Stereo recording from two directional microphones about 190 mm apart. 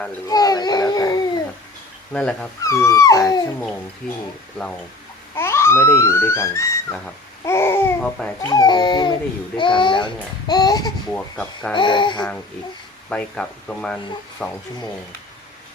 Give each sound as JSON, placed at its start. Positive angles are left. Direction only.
{"t": 0.3, "sound": "a child's voice", "side_deg": 20}
{"t": 2.1, "sound": "speech", "side_deg": 5}
{"t": 2.6, "sound": "speech", "side_deg": 15}
{"t": 5.4, "sound": "a child's voice", "side_deg": 15}
{"t": 8.4, "sound": "speech", "side_deg": 20}
{"t": 11.1, "sound": "speech", "side_deg": 5}
{"t": 11.7, "sound": "speech", "side_deg": 25}
{"t": 13.1, "sound": "speech", "side_deg": 5}